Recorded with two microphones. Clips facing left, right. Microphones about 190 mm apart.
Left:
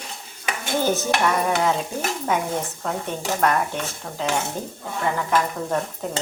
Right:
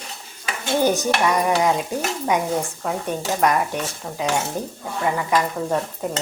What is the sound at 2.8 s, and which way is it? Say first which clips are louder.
A woman's voice: right 2 dB; 10° right (ahead or behind).